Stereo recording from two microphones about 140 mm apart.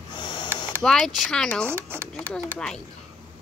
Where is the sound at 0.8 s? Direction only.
5° left (ahead or behind).